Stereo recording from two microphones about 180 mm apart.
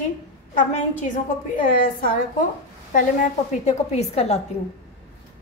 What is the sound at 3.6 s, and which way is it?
Speech, 35° left (ahead or behind).